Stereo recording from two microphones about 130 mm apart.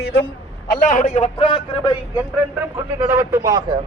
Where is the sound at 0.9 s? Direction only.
65° left (ahead or behind); by 2.0 s 40° left (ahead or behind).